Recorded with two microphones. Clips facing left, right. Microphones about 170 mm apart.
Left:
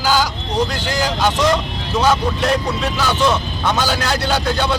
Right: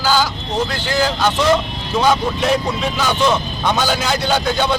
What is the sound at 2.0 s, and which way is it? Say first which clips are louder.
Speech: even; centre (ahead or behind).